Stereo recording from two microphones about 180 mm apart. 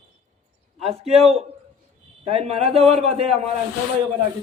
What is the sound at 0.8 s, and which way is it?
A man's voice, 35° right (ahead or behind).